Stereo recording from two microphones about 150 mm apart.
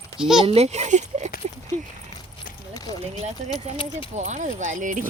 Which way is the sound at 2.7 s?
25° left (ahead or behind).